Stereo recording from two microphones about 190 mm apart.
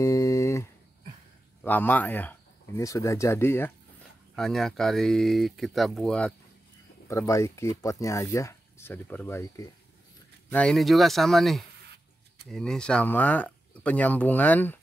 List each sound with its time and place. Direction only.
0.0 s a sound: 15° left (ahead or behind)
1.6 s speech: 10° left (ahead or behind)
7.1 s speech: 15° left (ahead or behind)